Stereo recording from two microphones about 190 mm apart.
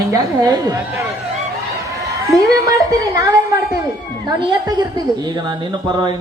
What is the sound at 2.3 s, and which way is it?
Speech, 20° right (ahead or behind).